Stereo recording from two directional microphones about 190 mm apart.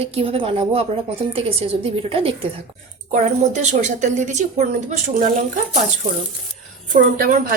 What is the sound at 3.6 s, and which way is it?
A woman's voice, 40° right (ahead or behind).